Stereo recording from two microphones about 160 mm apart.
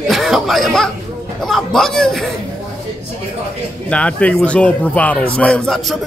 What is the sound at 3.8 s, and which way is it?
A man's voice, 5° left (ahead or behind).